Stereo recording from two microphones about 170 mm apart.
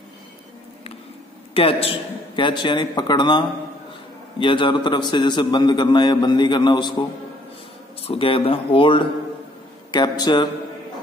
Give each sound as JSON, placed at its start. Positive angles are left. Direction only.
{"t": 1.5, "sound": "a man's voice", "side_deg": 35}
{"t": 8.0, "sound": "a man's voice", "side_deg": 35}